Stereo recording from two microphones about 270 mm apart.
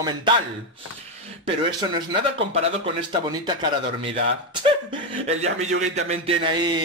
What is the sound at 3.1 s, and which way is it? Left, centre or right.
A man's voice, centre.